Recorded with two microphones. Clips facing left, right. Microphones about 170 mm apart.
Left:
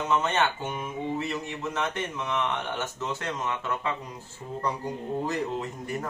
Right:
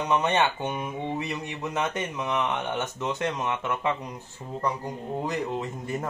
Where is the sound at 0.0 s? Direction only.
20° right (ahead or behind).